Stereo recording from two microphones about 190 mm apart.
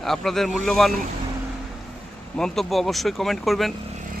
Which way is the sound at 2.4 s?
Centre (ahead or behind).